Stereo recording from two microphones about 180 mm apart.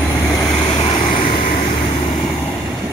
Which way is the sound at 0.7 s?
30° left (ahead or behind).